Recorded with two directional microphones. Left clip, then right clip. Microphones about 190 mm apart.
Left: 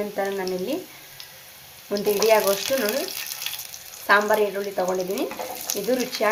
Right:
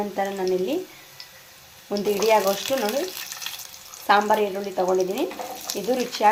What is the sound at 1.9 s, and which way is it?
Speech, 5° right (ahead or behind).